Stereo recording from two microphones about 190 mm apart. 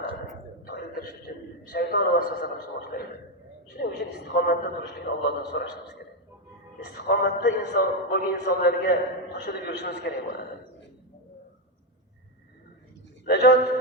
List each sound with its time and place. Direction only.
0.6 s a sound: 55° left (ahead or behind)
1.7 s a man's voice: 55° left (ahead or behind)
3.7 s a man's voice: 60° left (ahead or behind)
6.8 s a man's voice: 60° left (ahead or behind)
13.2 s a man's voice: 60° left (ahead or behind)